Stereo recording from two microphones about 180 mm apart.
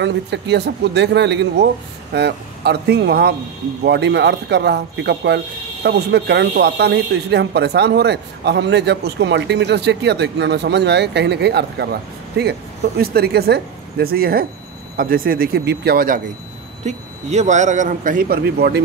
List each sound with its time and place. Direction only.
0.0 s speech: 75° right (ahead or behind)
3.8 s speech: 70° right (ahead or behind)
16.8 s a man's voice: 40° right (ahead or behind); by 18.8 s 60° right (ahead or behind)